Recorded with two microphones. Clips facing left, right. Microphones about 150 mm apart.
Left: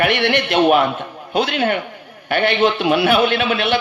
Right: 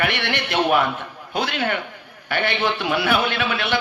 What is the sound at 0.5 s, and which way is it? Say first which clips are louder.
A man's voice: left 4 dB; 20° left (ahead or behind).